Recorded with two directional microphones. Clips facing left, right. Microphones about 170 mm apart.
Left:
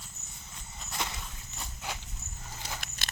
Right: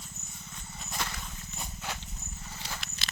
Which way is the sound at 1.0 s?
20° left (ahead or behind).